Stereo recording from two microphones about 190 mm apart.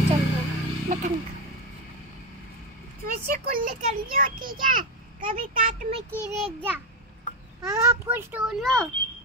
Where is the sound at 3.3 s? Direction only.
50° right (ahead or behind).